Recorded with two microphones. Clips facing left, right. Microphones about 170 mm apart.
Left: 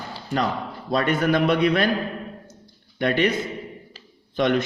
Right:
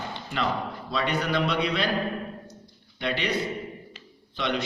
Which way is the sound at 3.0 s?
50° left (ahead or behind).